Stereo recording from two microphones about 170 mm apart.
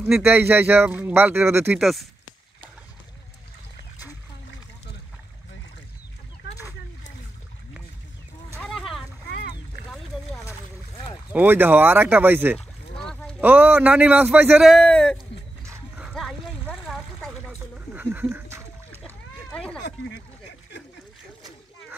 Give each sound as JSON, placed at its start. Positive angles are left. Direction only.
{"t": 0.0, "sound": "speech", "side_deg": -10}
{"t": 1.8, "sound": "speech", "side_deg": 0}
{"t": 8.6, "sound": "boat", "side_deg": 0}
{"t": 9.3, "sound": "boat", "side_deg": 65}
{"t": 11.3, "sound": "speech", "side_deg": -10}
{"t": 12.5, "sound": "boat", "side_deg": 5}
{"t": 13.4, "sound": "speech", "side_deg": -10}
{"t": 14.7, "sound": "speech", "side_deg": 5}
{"t": 16.0, "sound": "a sound", "side_deg": 0}
{"t": 17.9, "sound": "a sound", "side_deg": -10}
{"t": 18.9, "sound": "splash", "side_deg": 10}